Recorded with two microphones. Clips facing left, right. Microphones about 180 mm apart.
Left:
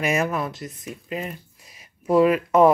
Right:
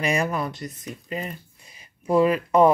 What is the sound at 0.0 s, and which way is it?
Speech, 5° left (ahead or behind).